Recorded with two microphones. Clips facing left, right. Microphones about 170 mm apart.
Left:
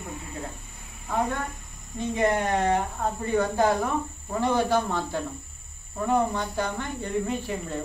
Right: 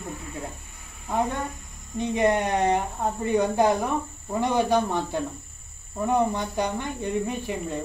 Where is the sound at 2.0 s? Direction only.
20° right (ahead or behind).